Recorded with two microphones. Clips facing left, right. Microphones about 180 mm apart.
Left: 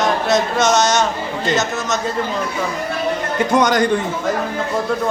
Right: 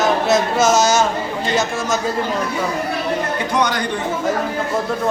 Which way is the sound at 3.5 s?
45° left (ahead or behind).